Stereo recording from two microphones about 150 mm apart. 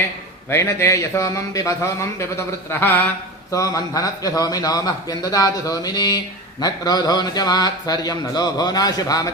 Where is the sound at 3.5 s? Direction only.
25° left (ahead or behind).